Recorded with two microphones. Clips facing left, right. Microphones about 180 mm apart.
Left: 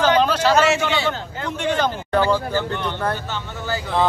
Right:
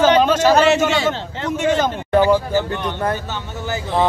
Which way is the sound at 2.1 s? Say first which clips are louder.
Right 6 dB; 15° right (ahead or behind).